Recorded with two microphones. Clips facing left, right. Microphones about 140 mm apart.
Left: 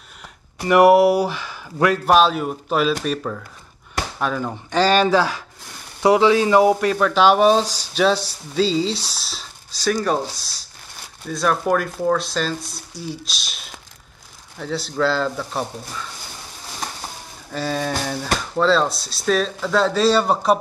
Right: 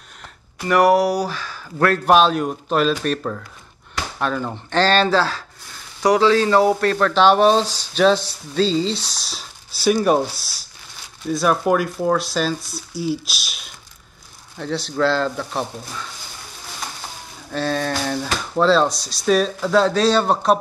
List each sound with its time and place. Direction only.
0.7 s speech: 20° left (ahead or behind)
2.0 s speech: centre (ahead or behind)
9.8 s speech: 15° right (ahead or behind)
14.6 s speech: 5° left (ahead or behind)
17.5 s speech: 5° left (ahead or behind)